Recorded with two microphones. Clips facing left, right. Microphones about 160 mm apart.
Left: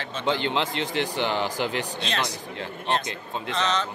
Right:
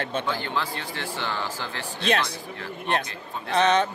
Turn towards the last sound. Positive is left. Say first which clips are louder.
# right 5 dB
turn(degrees=-55)  # may be behind; listen again after turning